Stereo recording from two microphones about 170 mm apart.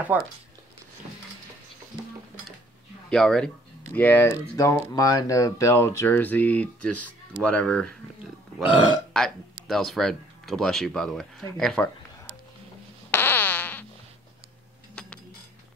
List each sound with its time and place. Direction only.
0.1 s speech: 10° right (ahead or behind)
3.1 s speech: 5° left (ahead or behind)
8.7 s speech: 25° left (ahead or behind)
9.7 s speech: centre (ahead or behind)
13.1 s fart: 10° left (ahead or behind)